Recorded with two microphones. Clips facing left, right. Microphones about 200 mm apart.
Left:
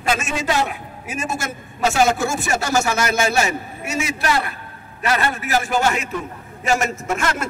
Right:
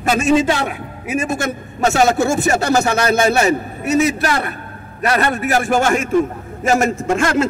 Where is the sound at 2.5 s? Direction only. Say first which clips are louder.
Right 4 dB; 55° right (ahead or behind).